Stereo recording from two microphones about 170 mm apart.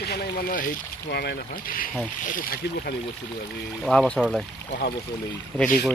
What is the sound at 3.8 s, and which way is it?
Speech, 5° left (ahead or behind).